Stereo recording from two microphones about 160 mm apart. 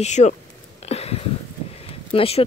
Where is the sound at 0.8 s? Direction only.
40° left (ahead or behind).